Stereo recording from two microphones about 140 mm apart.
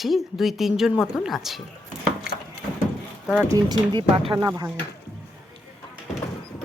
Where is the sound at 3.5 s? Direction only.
30° right (ahead or behind).